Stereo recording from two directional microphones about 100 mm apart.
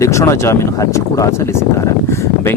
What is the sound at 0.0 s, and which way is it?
Speech, 30° left (ahead or behind).